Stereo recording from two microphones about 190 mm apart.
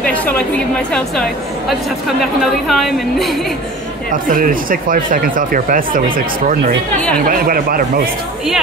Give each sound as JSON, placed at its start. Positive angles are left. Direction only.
{"t": 0.0, "sound": "chatter", "side_deg": 10}
{"t": 2.7, "sound": "a woman's voice", "side_deg": 0}
{"t": 4.1, "sound": "speech", "side_deg": -45}